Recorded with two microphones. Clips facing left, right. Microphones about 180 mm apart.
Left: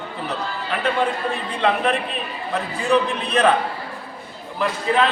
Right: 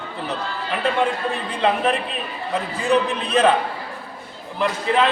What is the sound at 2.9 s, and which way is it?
Speech, centre (ahead or behind).